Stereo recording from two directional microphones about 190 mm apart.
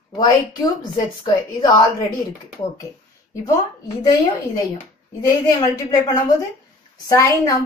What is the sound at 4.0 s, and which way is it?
Speech, 20° left (ahead or behind).